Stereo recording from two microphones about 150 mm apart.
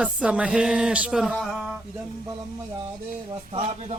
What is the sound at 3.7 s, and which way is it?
Speech, 45° right (ahead or behind).